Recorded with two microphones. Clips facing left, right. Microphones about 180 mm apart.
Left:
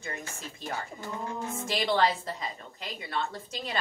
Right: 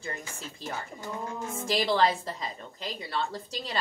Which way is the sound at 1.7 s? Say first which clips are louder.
Right 2 dB; 30° right (ahead or behind).